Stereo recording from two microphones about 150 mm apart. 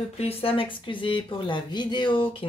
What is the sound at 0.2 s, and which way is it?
Speech, 40° left (ahead or behind).